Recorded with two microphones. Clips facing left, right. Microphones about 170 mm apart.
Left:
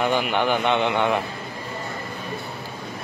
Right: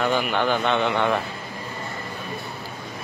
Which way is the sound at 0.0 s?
15° left (ahead or behind).